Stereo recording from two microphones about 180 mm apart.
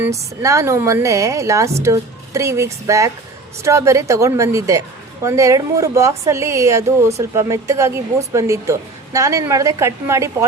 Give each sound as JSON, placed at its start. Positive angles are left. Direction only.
{"t": 0.0, "sound": "speech", "side_deg": -15}